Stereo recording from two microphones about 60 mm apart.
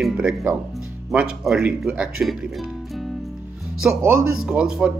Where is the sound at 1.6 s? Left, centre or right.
Centre.